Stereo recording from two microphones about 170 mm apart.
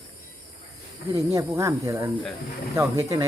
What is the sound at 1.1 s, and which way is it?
Speech, 20° right (ahead or behind).